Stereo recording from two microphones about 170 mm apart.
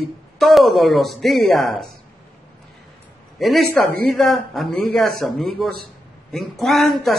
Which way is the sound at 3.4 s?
Centre (ahead or behind).